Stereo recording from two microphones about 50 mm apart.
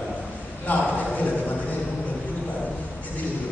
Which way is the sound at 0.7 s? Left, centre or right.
Left.